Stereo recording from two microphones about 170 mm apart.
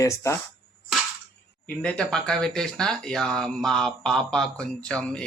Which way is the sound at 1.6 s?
10° left (ahead or behind).